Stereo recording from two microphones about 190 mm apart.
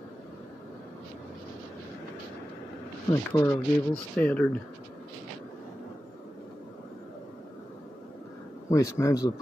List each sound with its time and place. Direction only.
3.3 s speech: 15° left (ahead or behind)
8.6 s speech: 15° left (ahead or behind)